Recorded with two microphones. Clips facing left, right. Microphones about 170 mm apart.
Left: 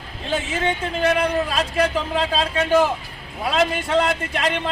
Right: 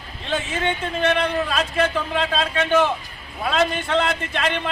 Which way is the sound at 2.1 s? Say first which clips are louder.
Left 1 dB; 35° left (ahead or behind).